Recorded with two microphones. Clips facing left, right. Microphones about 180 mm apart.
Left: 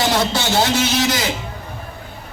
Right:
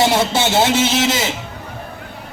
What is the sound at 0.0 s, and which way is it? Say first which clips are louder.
Speech: right 3 dB; 25° right (ahead or behind).